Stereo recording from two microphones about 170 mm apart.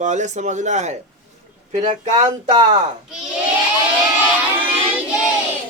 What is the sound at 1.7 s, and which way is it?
Speech, 30° right (ahead or behind).